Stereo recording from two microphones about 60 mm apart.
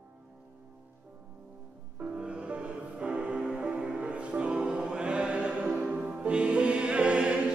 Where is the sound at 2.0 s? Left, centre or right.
Right.